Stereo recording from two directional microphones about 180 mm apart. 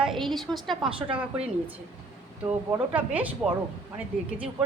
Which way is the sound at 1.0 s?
30° right (ahead or behind).